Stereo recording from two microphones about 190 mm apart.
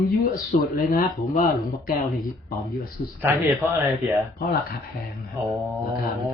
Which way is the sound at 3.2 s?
10° right (ahead or behind).